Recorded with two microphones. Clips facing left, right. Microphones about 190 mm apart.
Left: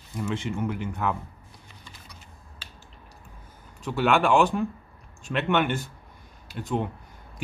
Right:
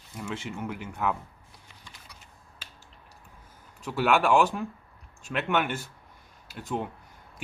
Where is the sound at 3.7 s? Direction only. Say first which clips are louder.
Left 2 dB; 5° right (ahead or behind).